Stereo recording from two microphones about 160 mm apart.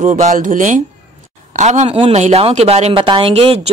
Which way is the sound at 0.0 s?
45° right (ahead or behind).